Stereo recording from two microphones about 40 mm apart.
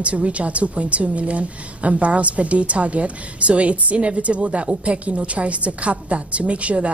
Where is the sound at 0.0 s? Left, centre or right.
Right.